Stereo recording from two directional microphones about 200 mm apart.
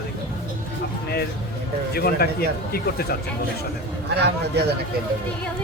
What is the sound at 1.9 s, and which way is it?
Speech, 50° left (ahead or behind).